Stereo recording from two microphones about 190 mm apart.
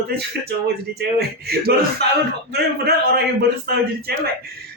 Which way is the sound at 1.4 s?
55° right (ahead or behind).